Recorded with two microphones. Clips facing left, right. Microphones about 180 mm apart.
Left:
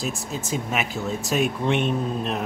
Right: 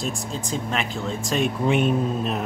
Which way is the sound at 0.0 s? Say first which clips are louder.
Right 1 dB; 5° left (ahead or behind).